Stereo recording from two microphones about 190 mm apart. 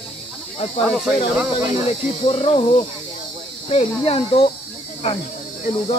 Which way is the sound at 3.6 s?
30° left (ahead or behind).